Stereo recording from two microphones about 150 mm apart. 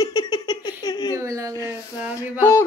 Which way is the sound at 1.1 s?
20° right (ahead or behind).